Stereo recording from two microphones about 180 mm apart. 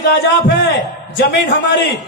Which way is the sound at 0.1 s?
70° left (ahead or behind).